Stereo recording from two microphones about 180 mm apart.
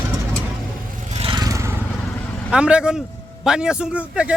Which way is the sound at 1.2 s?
25° right (ahead or behind).